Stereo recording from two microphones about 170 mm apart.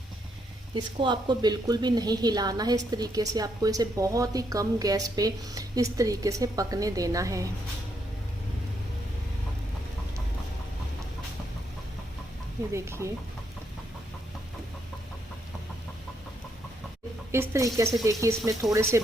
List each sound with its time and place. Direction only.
0.7 s a woman's voice: 30° right (ahead or behind)
12.7 s speech: 15° right (ahead or behind)
17.3 s speech: 15° right (ahead or behind)